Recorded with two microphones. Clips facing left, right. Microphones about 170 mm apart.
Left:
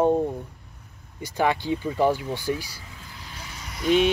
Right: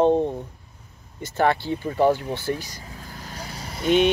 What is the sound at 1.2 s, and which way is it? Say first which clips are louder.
Speech: right 2 dB; 10° left (ahead or behind).